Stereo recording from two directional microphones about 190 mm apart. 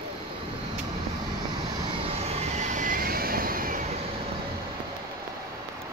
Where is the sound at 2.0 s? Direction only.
35° right (ahead or behind).